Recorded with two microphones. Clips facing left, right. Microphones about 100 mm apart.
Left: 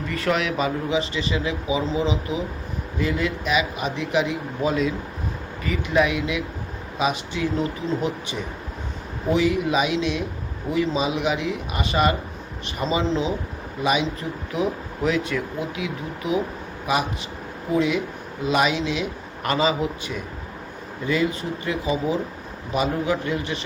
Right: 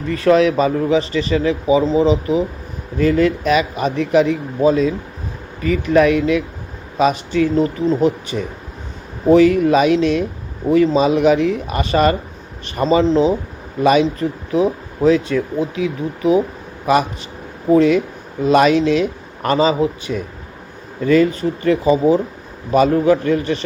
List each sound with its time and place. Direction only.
0.1 s speech: 35° right (ahead or behind)
16.8 s a man's voice: 45° right (ahead or behind)